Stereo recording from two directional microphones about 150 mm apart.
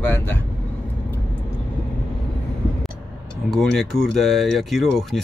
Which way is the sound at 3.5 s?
5° left (ahead or behind).